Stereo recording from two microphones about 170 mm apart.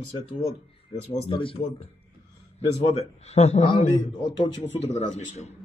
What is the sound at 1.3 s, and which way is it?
Speech, 30° left (ahead or behind).